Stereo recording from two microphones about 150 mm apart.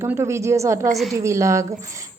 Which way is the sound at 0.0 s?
20° right (ahead or behind).